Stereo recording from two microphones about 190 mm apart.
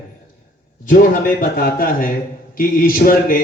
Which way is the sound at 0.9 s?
45° left (ahead or behind).